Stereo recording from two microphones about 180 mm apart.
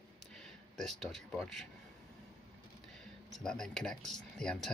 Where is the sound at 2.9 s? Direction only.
5° left (ahead or behind).